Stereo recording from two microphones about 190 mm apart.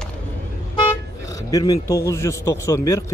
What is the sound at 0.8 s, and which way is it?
Speech, 20° left (ahead or behind).